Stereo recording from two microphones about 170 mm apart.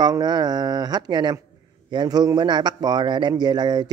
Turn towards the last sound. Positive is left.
turn(degrees=-25)  # may be behind; listen again after turning